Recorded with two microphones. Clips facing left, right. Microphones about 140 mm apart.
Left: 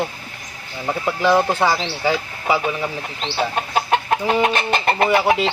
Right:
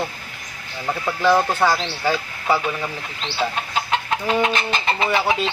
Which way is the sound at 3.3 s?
50° left (ahead or behind).